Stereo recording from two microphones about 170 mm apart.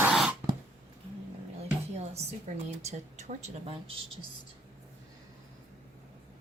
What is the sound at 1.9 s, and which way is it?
A woman's voice, 40° right (ahead or behind).